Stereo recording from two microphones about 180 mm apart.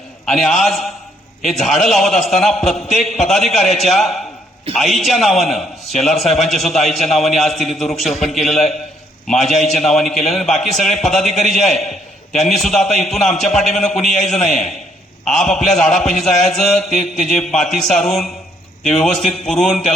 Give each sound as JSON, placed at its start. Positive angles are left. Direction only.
{"t": 0.3, "sound": "a man's voice", "side_deg": 0}
{"t": 19.0, "sound": "a man's voice", "side_deg": 0}